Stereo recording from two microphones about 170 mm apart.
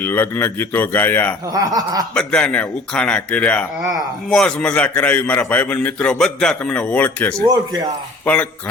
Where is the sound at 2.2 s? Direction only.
5° left (ahead or behind).